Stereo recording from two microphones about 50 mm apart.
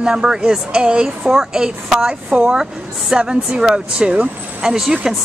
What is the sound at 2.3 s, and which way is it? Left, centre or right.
Speech, right.